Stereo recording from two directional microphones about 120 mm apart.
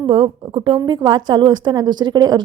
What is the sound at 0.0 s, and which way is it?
A woman's voice, 40° right (ahead or behind).